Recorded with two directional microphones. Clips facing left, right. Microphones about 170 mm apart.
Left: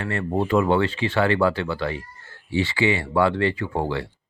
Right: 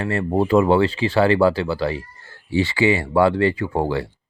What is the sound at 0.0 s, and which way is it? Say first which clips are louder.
Speech: right 4 dB; 35° right (ahead or behind).